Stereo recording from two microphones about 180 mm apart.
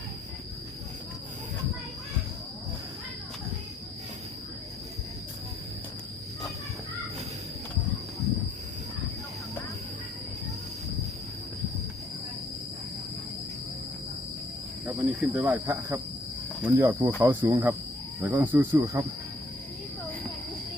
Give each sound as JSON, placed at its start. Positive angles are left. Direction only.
{"t": 14.8, "sound": "cricket", "side_deg": -10}